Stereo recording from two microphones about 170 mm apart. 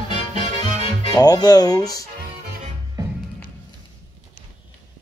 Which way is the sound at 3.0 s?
25° right (ahead or behind).